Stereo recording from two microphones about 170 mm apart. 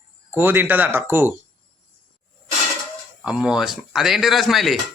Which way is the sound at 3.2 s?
5° right (ahead or behind).